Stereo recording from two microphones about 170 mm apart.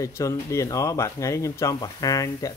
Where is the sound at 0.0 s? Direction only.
15° left (ahead or behind).